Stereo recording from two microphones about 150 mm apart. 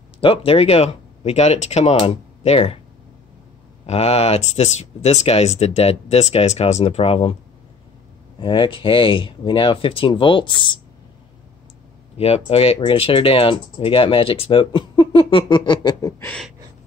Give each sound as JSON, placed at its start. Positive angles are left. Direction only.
{"t": 0.2, "sound": "speech", "side_deg": 35}
{"t": 3.8, "sound": "speech", "side_deg": 45}
{"t": 8.4, "sound": "speech", "side_deg": 35}
{"t": 12.2, "sound": "speech", "side_deg": 40}
{"t": 16.2, "sound": "speech", "side_deg": 10}